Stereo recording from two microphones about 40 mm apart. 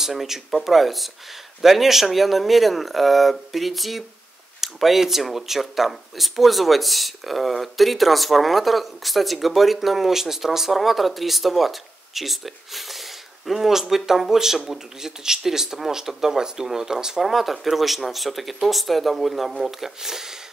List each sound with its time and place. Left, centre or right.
0.0 s speech: centre